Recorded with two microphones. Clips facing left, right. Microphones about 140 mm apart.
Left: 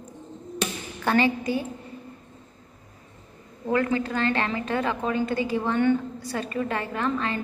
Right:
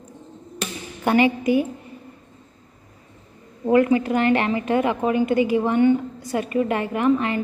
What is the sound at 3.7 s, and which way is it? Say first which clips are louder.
A woman's voice: right 7 dB; 20° right (ahead or behind).